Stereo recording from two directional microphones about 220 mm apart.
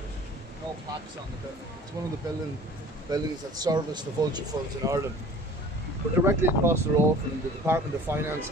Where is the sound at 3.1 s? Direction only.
15° right (ahead or behind).